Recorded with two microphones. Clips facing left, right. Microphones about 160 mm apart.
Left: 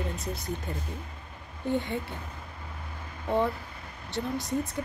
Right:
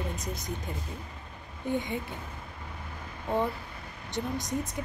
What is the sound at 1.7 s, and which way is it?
Speech, 15° right (ahead or behind).